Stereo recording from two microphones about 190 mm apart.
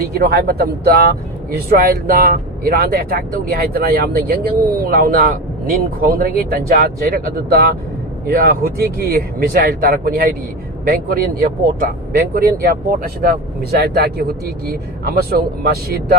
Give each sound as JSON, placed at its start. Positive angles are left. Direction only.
{"t": 0.1, "sound": "speech", "side_deg": -55}